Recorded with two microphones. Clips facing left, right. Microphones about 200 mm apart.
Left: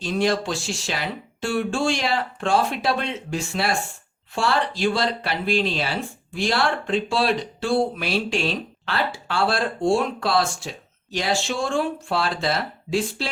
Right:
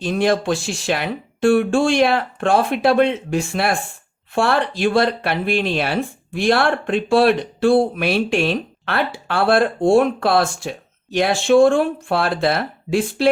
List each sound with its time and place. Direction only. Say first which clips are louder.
0.0 s speech: right 4 dB; 55° right (ahead or behind)